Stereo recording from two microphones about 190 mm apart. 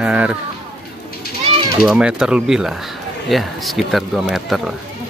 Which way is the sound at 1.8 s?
5° right (ahead or behind).